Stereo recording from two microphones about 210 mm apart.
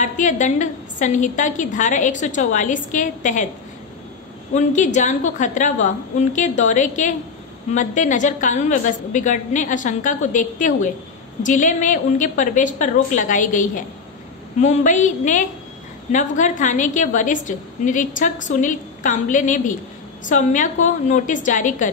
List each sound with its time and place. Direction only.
0.0 s a woman's voice: 35° left (ahead or behind)
4.6 s a woman's voice: 35° left (ahead or behind)